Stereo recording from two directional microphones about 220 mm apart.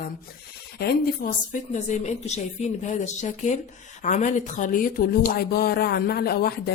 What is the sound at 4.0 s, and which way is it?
Speech, 35° left (ahead or behind).